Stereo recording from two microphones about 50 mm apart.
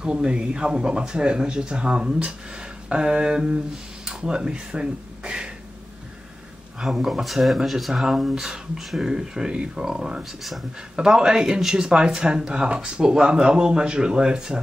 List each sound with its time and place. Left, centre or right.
0.0 s speech: centre
6.8 s speech: centre